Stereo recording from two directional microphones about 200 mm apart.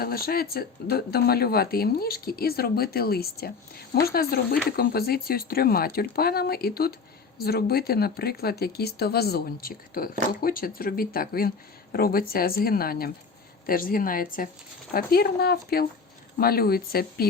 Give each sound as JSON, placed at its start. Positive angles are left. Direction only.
{"t": 0.3, "sound": "speech", "side_deg": 50}